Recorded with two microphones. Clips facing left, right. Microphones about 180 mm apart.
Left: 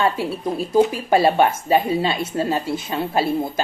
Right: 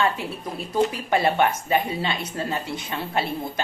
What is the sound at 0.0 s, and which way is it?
A woman's voice, 25° left (ahead or behind).